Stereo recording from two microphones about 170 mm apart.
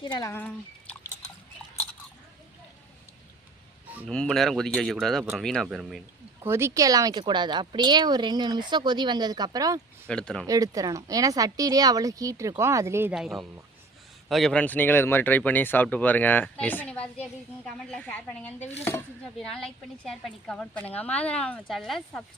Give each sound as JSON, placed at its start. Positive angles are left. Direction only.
{"t": 0.0, "sound": "speech", "side_deg": 25}
{"t": 0.3, "sound": "speech", "side_deg": 10}
{"t": 4.1, "sound": "a woman's voice", "side_deg": 5}
{"t": 6.4, "sound": "speech", "side_deg": -15}
{"t": 10.1, "sound": "a woman's voice", "side_deg": 5}
{"t": 10.4, "sound": "speech", "side_deg": -20}
{"t": 13.1, "sound": "a woman's voice", "side_deg": 0}